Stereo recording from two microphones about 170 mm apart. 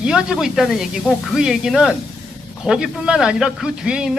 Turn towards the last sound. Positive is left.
turn(degrees=-5)  # may be behind; listen again after turning